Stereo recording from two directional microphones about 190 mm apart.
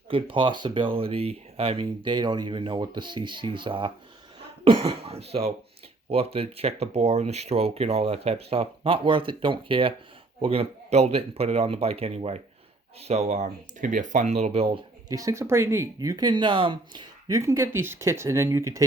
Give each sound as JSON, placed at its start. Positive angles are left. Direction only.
{"t": 0.1, "sound": "speech", "side_deg": -25}
{"t": 15.1, "sound": "speech", "side_deg": -15}